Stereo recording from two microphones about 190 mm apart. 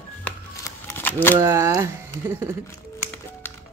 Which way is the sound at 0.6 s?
10° left (ahead or behind).